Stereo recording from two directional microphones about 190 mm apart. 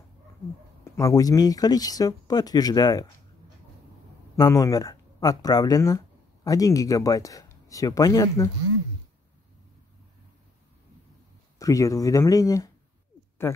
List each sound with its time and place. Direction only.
0.8 s speech: 15° left (ahead or behind)
4.4 s speech: 15° left (ahead or behind)
11.5 s speech: 15° left (ahead or behind)